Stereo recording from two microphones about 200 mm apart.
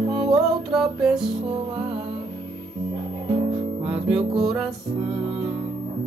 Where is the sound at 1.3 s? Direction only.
25° right (ahead or behind).